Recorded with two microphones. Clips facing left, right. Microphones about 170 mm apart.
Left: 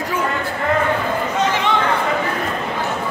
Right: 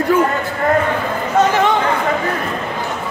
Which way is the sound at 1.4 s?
50° right (ahead or behind).